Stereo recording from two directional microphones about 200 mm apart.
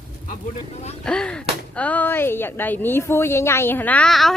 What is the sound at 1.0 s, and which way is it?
Speech, 5° left (ahead or behind).